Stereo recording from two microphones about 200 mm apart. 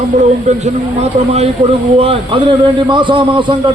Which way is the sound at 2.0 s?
30° right (ahead or behind).